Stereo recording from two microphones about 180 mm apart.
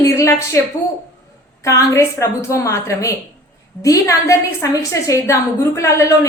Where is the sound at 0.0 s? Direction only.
15° left (ahead or behind).